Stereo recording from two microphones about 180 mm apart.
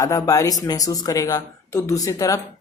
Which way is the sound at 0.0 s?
20° left (ahead or behind).